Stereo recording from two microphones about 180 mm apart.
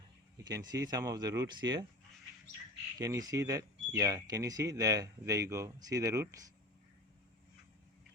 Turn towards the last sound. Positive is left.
turn(degrees=-15)  # may be behind; listen again after turning